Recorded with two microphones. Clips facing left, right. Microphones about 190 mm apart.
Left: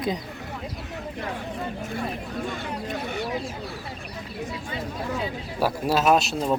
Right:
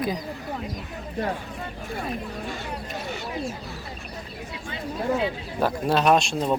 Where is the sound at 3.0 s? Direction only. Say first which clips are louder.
Left 3 dB; 60° left (ahead or behind).